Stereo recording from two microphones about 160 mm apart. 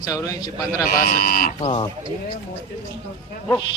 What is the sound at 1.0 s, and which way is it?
Speech, 65° left (ahead or behind).